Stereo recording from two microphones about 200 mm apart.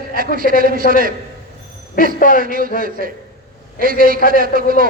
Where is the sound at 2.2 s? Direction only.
45° left (ahead or behind).